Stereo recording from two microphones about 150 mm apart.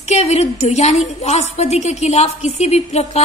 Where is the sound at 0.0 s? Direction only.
45° left (ahead or behind).